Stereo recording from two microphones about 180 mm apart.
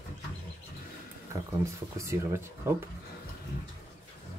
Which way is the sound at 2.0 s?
15° right (ahead or behind).